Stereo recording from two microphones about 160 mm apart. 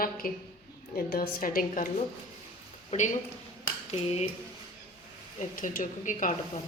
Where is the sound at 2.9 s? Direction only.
45° left (ahead or behind).